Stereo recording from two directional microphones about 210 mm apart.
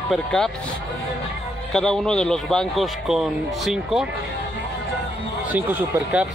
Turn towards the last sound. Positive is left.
turn(degrees=-5)  # may be behind; listen again after turning